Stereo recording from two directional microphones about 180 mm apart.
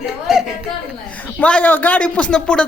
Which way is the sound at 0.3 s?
Centre (ahead or behind).